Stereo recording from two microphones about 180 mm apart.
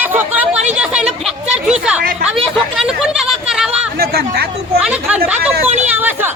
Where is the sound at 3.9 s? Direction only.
60° right (ahead or behind).